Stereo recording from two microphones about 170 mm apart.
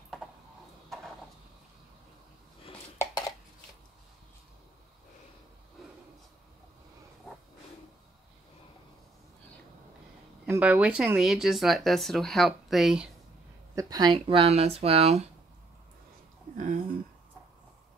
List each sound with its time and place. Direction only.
3.0 s dishes: 20° left (ahead or behind)
10.4 s speech: 10° right (ahead or behind)
13.7 s speech: 20° right (ahead or behind)
16.5 s a sound: 45° right (ahead or behind)